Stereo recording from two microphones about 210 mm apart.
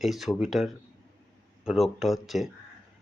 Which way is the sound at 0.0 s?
Centre (ahead or behind).